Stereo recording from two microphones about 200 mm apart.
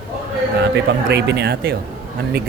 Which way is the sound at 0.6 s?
60° right (ahead or behind).